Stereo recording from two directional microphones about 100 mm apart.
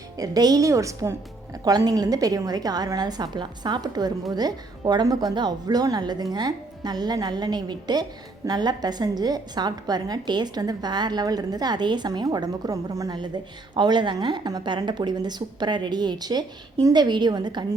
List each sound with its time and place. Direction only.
0.2 s a woman's voice: 40° right (ahead or behind)
13.1 s a woman's voice: 50° right (ahead or behind)